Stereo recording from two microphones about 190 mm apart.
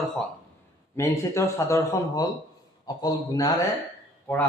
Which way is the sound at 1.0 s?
15° left (ahead or behind).